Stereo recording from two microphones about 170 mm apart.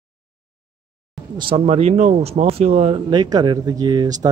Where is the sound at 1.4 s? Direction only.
35° right (ahead or behind).